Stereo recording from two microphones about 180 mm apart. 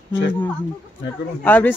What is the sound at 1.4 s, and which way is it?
Speech, 10° left (ahead or behind).